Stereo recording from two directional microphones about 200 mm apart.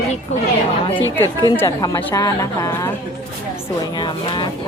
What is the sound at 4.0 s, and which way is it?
Speech, 25° left (ahead or behind).